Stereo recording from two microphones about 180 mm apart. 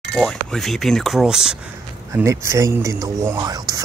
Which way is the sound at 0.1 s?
Centre (ahead or behind).